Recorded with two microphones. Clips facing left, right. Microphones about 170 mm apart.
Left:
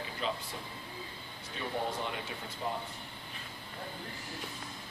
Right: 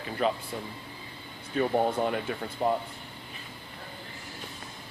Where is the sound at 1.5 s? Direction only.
50° right (ahead or behind).